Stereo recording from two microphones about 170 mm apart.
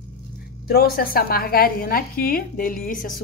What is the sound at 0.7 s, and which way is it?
A woman's voice, 65° left (ahead or behind).